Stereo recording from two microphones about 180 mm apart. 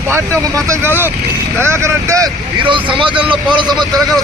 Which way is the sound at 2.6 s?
25° right (ahead or behind).